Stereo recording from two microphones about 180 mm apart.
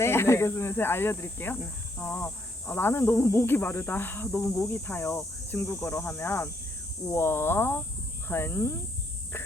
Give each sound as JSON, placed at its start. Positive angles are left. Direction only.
{"t": 0.0, "sound": "speech", "side_deg": 15}